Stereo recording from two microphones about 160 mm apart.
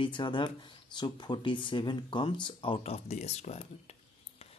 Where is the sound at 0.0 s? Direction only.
30° left (ahead or behind).